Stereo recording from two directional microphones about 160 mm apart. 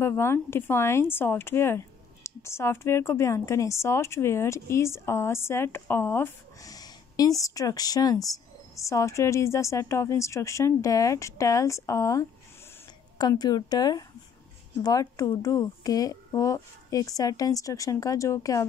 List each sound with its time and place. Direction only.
0.0 s speech: 15° left (ahead or behind)